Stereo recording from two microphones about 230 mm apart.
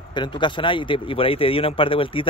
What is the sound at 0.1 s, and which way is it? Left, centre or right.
Speech, left.